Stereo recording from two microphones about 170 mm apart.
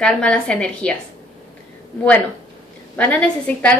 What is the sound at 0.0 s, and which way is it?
Speech, 5° left (ahead or behind).